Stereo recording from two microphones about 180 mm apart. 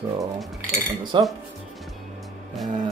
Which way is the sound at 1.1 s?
25° right (ahead or behind).